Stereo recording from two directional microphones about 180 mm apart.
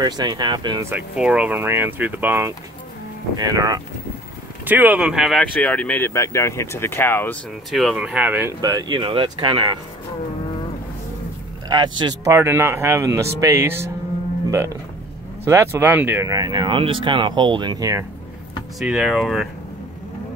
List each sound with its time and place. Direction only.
0.0 s speech: 25° right (ahead or behind)
0.8 s speech: 5° right (ahead or behind)
4.6 s speech: 10° right (ahead or behind); by 7.3 s 10° left (ahead or behind)
7.7 s speech: centre (ahead or behind); by 9.8 s 30° right (ahead or behind)
12.0 s speech: 20° right (ahead or behind)
18.8 s speech: 5° right (ahead or behind)